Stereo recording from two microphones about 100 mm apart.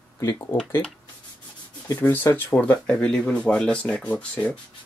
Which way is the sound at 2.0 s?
20° left (ahead or behind).